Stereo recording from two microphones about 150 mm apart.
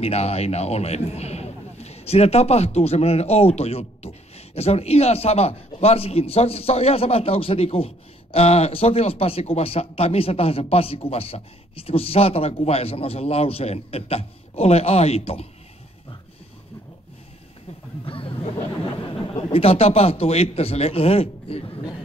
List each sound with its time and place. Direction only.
0.0 s a man's voice: 45° left (ahead or behind)
18.0 s a sound: 35° left (ahead or behind)
19.0 s a man's voice: 35° left (ahead or behind)